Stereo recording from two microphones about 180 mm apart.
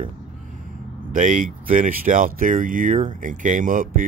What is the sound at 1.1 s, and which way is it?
Speech, 45° right (ahead or behind).